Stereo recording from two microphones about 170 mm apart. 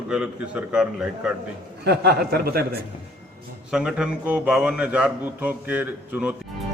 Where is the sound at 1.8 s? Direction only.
70° right (ahead or behind).